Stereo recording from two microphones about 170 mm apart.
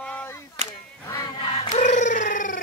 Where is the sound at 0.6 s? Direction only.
40° right (ahead or behind).